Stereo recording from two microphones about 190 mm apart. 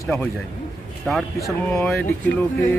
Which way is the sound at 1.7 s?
5° left (ahead or behind).